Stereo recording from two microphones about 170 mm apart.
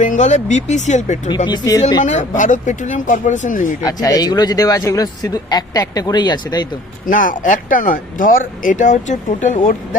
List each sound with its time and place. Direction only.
0.0 s speech: 45° left (ahead or behind)
1.5 s speech: 20° left (ahead or behind)
2.0 s speech: 45° left (ahead or behind)
3.8 s speech: 20° left (ahead or behind)
7.1 s speech: 50° left (ahead or behind)